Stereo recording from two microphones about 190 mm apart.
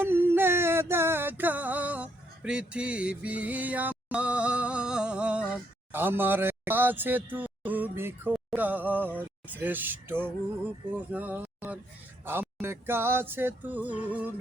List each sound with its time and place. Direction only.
0.0 s music: 10° right (ahead or behind)